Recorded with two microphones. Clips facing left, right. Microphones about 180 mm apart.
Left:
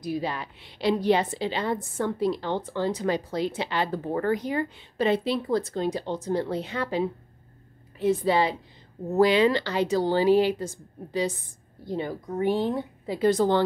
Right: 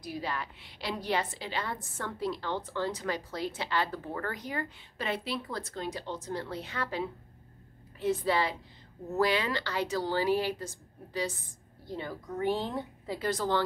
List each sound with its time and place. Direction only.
0.0 s a woman's voice: 20° left (ahead or behind)
11.9 s a woman's voice: 20° left (ahead or behind)